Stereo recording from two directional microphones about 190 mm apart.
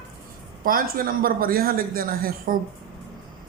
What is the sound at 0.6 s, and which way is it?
Speech, 50° right (ahead or behind).